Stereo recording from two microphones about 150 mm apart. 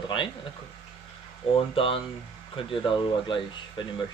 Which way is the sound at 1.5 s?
35° left (ahead or behind).